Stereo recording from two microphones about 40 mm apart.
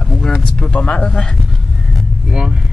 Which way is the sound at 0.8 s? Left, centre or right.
Left.